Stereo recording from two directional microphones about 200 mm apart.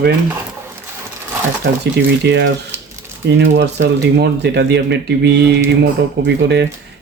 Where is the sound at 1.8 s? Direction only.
60° right (ahead or behind).